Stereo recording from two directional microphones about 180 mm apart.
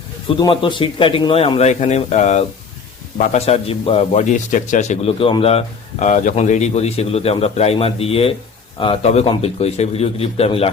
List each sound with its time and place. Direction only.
0.3 s a man's voice: 25° left (ahead or behind)